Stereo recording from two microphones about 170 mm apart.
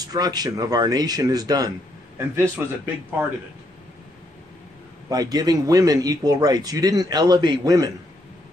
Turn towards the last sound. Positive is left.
turn(degrees=-20)  # may be behind; listen again after turning